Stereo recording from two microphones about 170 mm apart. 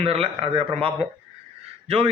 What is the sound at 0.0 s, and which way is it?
A man's voice, 35° right (ahead or behind).